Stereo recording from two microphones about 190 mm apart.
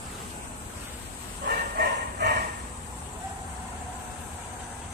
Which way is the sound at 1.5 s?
50° right (ahead or behind).